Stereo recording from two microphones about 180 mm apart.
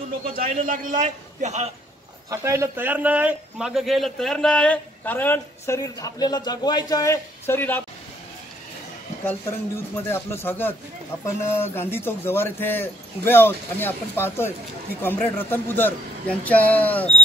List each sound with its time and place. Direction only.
0.4 s a man's voice: 50° right (ahead or behind)
2.2 s a man's voice: 15° right (ahead or behind); by 7.8 s 10° left (ahead or behind)
9.9 s a man's voice: 10° left (ahead or behind)